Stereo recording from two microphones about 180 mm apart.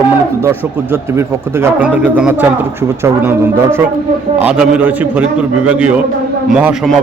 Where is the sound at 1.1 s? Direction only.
15° right (ahead or behind).